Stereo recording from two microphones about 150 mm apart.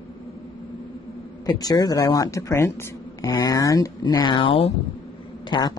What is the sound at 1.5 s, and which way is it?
Speech, 25° left (ahead or behind).